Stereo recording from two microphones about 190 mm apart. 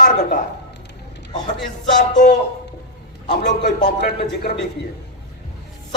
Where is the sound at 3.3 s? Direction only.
60° left (ahead or behind).